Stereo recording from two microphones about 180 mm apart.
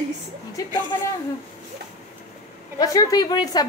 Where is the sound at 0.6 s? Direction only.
20° left (ahead or behind).